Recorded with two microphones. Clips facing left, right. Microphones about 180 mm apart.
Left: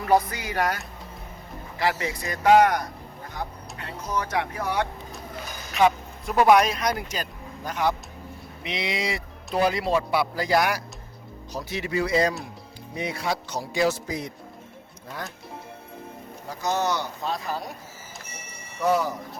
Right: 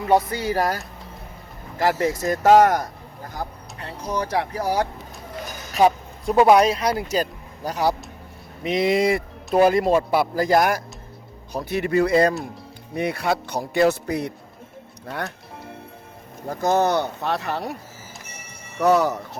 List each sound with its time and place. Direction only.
0.0 s speech: 25° right (ahead or behind); by 2.8 s 40° right (ahead or behind)
3.3 s speech: 30° right (ahead or behind)
5.7 s a sound: 35° right (ahead or behind)
6.3 s speech: 25° right (ahead or behind)
8.6 s a man's voice: 50° right (ahead or behind); by 15.3 s 65° right (ahead or behind)
16.5 s a man's voice: 55° right (ahead or behind); by 17.7 s 70° right (ahead or behind)
18.8 s speech: 70° right (ahead or behind)